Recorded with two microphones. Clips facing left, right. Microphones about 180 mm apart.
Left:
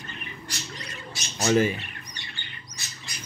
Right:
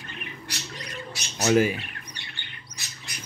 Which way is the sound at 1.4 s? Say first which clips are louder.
Right 1 dB; 5° right (ahead or behind).